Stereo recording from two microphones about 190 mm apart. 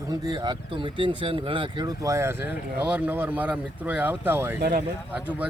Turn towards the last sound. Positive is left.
turn(degrees=-10)  # may be behind; listen again after turning